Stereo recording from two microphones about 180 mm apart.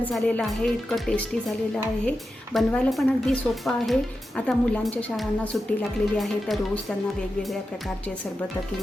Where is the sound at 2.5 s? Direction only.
5° left (ahead or behind).